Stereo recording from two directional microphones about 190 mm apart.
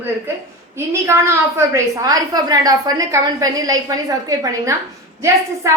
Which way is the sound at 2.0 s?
20° right (ahead or behind).